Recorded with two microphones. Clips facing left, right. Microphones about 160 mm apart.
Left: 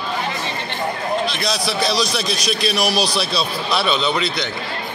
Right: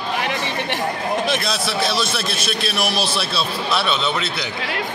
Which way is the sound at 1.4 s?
Centre (ahead or behind).